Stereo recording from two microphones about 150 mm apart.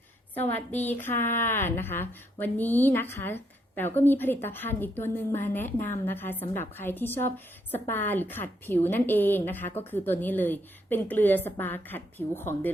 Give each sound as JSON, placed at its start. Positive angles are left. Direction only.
{"t": 0.5, "sound": "speech", "side_deg": 10}